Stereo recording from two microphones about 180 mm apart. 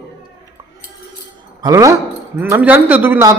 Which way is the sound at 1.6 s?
20° right (ahead or behind).